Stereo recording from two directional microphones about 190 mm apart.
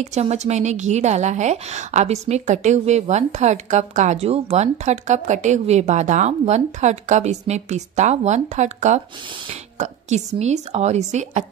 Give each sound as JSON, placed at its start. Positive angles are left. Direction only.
{"t": 0.0, "sound": "a woman's voice", "side_deg": -35}